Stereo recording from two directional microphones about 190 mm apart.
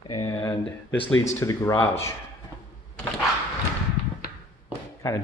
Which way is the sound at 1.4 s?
15° left (ahead or behind).